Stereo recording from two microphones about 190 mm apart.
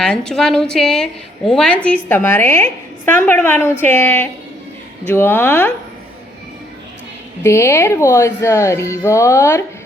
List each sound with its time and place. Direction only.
0.0 s a woman's voice: 5° left (ahead or behind)
7.4 s speech: 15° left (ahead or behind)